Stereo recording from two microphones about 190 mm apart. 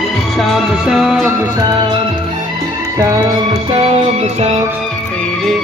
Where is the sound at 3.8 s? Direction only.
35° right (ahead or behind).